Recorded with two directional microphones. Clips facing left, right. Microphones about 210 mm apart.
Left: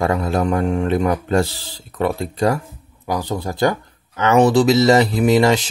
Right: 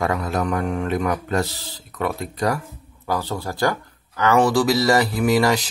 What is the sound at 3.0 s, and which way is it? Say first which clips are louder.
Mantra: left 3 dB; 15° left (ahead or behind).